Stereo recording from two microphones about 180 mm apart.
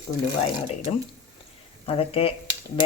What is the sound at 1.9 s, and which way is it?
Speech, 30° left (ahead or behind).